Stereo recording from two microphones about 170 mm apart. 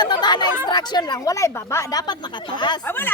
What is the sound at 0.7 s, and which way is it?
Speech, 25° left (ahead or behind).